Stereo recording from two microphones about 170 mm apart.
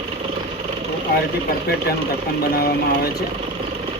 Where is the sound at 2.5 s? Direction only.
65° left (ahead or behind).